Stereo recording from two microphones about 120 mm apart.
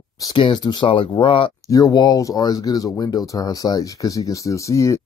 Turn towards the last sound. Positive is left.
turn(degrees=25)  # may be behind; listen again after turning